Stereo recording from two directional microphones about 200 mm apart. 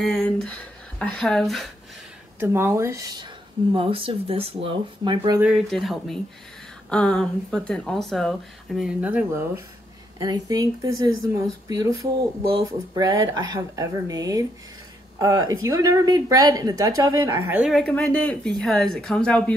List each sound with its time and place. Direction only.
0.0 s speech: centre (ahead or behind)
2.4 s speech: 15° right (ahead or behind)
3.7 s a woman's voice: 25° right (ahead or behind)
5.4 s a woman's voice: centre (ahead or behind)